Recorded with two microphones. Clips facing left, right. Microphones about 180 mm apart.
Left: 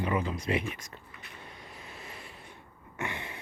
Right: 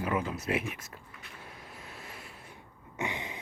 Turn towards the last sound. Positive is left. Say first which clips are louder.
# right 1 dB
turn(degrees=-15)  # may be behind; listen again after turning